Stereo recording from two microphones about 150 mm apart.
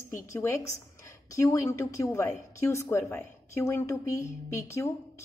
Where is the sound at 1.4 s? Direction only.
20° left (ahead or behind).